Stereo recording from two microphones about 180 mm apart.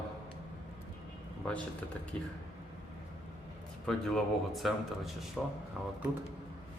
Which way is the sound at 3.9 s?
Centre (ahead or behind).